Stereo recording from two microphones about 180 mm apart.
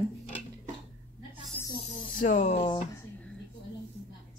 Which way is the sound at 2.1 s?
45° left (ahead or behind).